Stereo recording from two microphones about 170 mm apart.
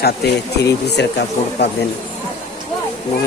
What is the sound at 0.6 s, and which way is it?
A man's voice, 75° left (ahead or behind).